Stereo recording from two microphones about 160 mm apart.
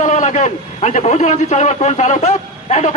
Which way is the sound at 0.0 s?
50° left (ahead or behind).